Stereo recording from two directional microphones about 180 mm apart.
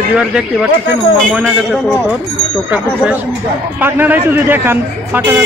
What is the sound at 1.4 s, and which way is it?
A man's voice, 5° right (ahead or behind).